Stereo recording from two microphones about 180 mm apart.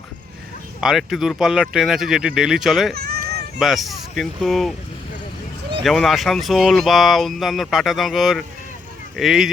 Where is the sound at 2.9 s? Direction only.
60° right (ahead or behind).